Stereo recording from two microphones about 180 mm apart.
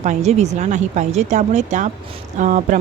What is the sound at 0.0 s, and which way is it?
Speech, 40° right (ahead or behind).